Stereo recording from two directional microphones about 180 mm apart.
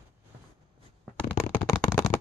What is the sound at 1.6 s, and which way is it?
Firecracker, 15° left (ahead or behind).